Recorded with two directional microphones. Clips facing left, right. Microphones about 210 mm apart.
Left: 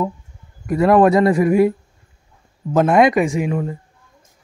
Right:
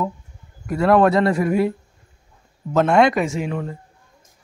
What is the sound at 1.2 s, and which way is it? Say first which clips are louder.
Speech: left 4 dB; centre (ahead or behind).